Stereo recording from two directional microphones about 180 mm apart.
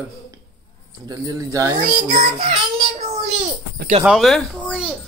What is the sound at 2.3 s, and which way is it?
Child singing, 35° right (ahead or behind).